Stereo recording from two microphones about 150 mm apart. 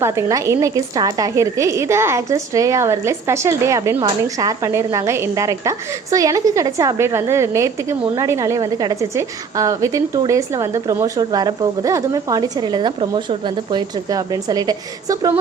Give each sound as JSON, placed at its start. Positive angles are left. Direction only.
{"t": 0.0, "sound": "a woman's voice", "side_deg": -20}